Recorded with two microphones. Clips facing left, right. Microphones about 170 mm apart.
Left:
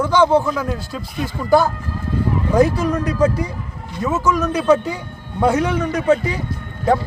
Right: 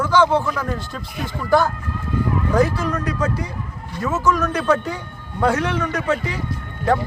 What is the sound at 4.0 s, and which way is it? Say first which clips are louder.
Speech: left 1 dB; 10° left (ahead or behind).